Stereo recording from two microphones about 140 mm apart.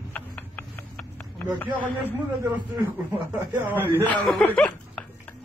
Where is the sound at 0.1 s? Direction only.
10° left (ahead or behind).